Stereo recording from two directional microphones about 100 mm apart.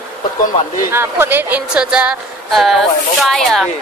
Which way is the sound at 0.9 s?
25° right (ahead or behind).